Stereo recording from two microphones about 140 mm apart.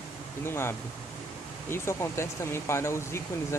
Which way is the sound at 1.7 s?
20° left (ahead or behind).